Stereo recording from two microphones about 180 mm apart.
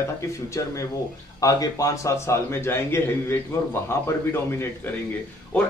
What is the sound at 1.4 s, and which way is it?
Speech, 20° left (ahead or behind).